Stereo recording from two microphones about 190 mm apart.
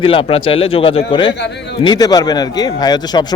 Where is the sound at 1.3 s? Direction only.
65° left (ahead or behind).